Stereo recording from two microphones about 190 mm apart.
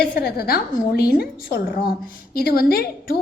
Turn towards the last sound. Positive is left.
turn(degrees=55)  # may be behind; listen again after turning